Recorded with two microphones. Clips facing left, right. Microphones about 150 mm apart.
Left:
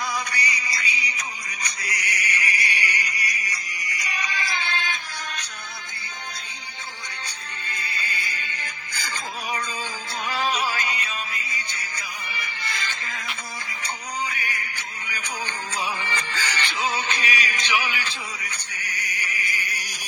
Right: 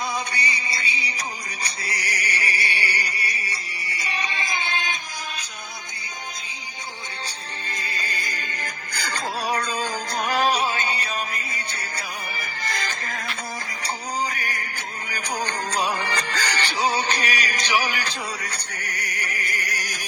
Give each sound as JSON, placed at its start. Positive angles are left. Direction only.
{"t": 0.3, "sound": "music", "side_deg": -25}
{"t": 7.8, "sound": "music", "side_deg": -40}
{"t": 9.8, "sound": "music", "side_deg": -45}
{"t": 10.6, "sound": "music", "side_deg": -30}
{"t": 11.3, "sound": "music", "side_deg": -50}
{"t": 12.4, "sound": "music", "side_deg": -45}
{"t": 18.3, "sound": "music", "side_deg": -65}
{"t": 19.8, "sound": "music", "side_deg": -50}